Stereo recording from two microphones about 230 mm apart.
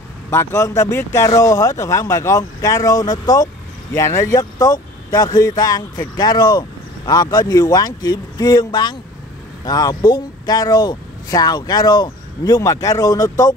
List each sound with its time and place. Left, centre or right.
0.3 s speech: centre